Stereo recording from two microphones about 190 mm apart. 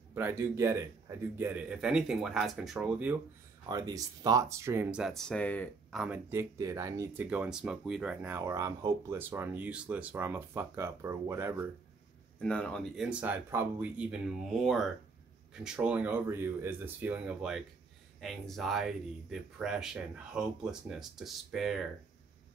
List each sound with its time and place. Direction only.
0.1 s speech: 10° right (ahead or behind)
3.6 s speech: 20° right (ahead or behind)
5.0 s speech: centre (ahead or behind); by 11.6 s 15° right (ahead or behind)
12.4 s speech: 5° left (ahead or behind)